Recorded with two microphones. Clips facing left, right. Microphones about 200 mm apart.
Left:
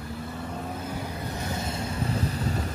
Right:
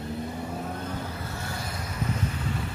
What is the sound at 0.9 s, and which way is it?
Vehicle, 15° left (ahead or behind).